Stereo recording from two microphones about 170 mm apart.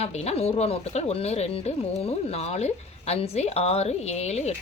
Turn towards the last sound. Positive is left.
turn(degrees=40)  # may be behind; listen again after turning